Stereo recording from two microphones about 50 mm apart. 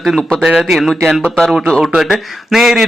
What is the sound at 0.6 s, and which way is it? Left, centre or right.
Speech, centre.